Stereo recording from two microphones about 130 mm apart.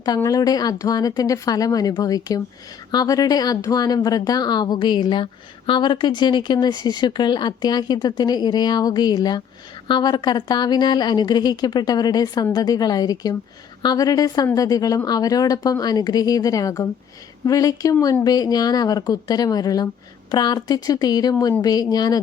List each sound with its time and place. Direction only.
0.0 s speech: 30° left (ahead or behind)